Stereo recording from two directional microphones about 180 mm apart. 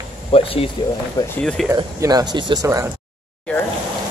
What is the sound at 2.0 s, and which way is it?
Speech, 20° right (ahead or behind).